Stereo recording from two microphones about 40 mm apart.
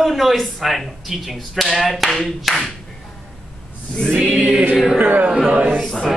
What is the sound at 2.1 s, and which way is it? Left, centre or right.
Music, centre.